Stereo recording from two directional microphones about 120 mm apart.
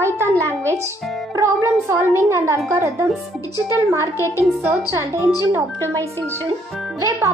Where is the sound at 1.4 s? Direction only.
25° right (ahead or behind).